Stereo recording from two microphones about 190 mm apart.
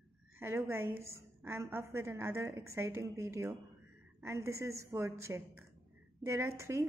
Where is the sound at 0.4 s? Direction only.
10° right (ahead or behind).